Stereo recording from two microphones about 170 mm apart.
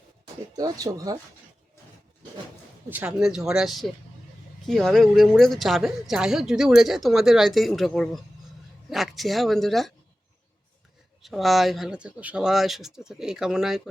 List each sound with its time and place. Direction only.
0.5 s speech: 20° right (ahead or behind)
2.9 s a woman's voice: 10° right (ahead or behind)
11.2 s a woman's voice: centre (ahead or behind)